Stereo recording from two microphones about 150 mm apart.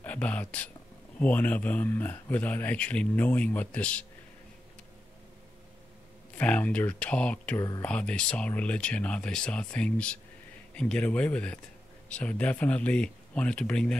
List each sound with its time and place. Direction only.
0.0 s speech: 10° left (ahead or behind)
6.3 s speech: 10° left (ahead or behind)